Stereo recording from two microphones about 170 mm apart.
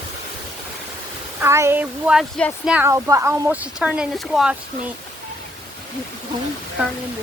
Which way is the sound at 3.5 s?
5° right (ahead or behind).